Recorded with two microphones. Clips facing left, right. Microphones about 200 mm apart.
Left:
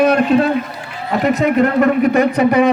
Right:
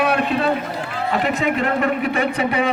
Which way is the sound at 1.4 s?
40° left (ahead or behind).